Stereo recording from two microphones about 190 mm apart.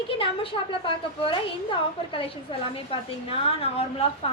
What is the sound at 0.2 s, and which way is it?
A woman's voice, 30° left (ahead or behind).